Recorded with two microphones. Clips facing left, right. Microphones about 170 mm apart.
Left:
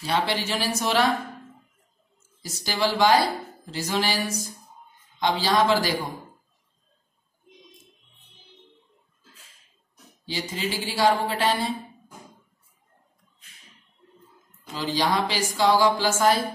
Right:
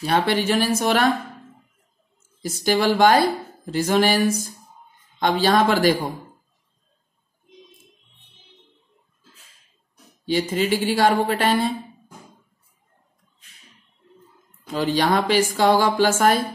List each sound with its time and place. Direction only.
0.0 s speech: 55° right (ahead or behind)
2.4 s a woman's voice: 55° right (ahead or behind)
10.2 s a woman's voice: 55° right (ahead or behind)
14.7 s a woman's voice: 55° right (ahead or behind)